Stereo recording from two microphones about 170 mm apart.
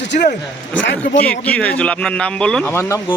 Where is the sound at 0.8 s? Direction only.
90° left.